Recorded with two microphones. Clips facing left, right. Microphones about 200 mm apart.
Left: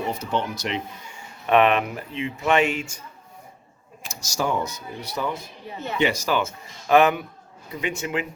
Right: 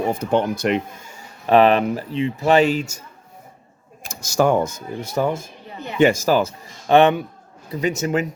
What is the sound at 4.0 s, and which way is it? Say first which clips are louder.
Speech: right 9 dB; 55° right (ahead or behind).